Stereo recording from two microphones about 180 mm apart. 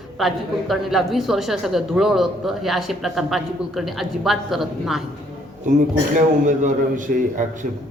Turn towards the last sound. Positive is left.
turn(degrees=-45)  # may be behind; listen again after turning